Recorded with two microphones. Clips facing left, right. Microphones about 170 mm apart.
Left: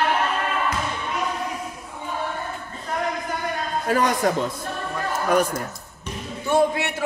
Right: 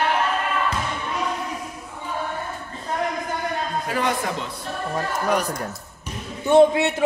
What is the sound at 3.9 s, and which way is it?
Speech, 45° left (ahead or behind).